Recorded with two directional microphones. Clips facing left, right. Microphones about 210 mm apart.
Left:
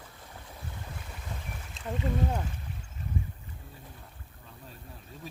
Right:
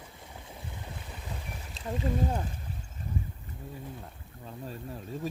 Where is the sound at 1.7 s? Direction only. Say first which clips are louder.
Right 1 dB; centre (ahead or behind).